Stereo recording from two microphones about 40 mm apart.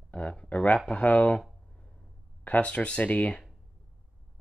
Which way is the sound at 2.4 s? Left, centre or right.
Left.